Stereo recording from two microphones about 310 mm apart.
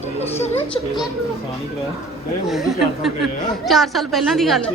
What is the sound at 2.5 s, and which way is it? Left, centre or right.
A woman's voice, centre.